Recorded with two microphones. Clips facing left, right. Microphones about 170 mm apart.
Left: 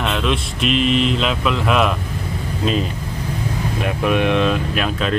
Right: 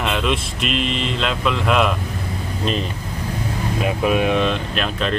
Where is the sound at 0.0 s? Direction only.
Centre (ahead or behind).